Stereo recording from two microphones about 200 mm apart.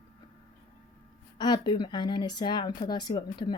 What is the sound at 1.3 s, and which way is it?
Speech, 20° left (ahead or behind).